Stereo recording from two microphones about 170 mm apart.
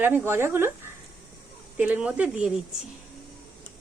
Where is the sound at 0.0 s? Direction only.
15° right (ahead or behind).